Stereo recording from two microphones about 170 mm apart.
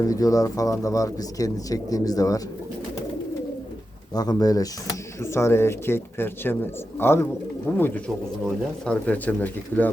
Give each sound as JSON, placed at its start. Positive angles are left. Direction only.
{"t": 0.0, "sound": "speech", "side_deg": 20}
{"t": 4.1, "sound": "speech", "side_deg": 25}